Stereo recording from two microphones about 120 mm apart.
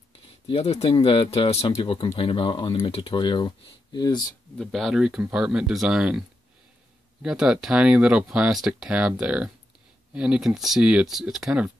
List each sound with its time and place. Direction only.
0.5 s speech: 55° left (ahead or behind); by 4.2 s 35° left (ahead or behind)
4.6 s speech: centre (ahead or behind)